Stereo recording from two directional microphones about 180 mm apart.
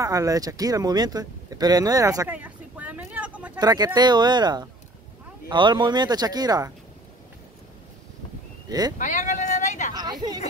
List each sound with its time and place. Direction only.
0.0 s speech: 15° right (ahead or behind)
3.5 s speech: 20° right (ahead or behind)
8.6 s speech: 20° right (ahead or behind)
8.9 s a sound: 45° left (ahead or behind)